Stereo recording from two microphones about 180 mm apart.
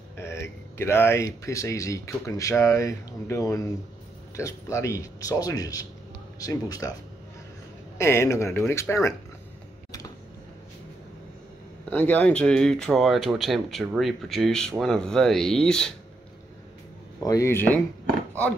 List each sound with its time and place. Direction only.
0.2 s speech: 15° left (ahead or behind)
8.0 s speech: 15° left (ahead or behind)
11.9 s speech: 10° left (ahead or behind)
17.2 s speech: 20° left (ahead or behind)